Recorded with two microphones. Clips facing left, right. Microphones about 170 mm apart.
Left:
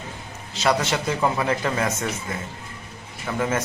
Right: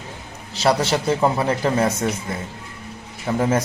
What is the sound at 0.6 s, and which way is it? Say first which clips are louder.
A man's voice: right 3 dB; 30° right (ahead or behind).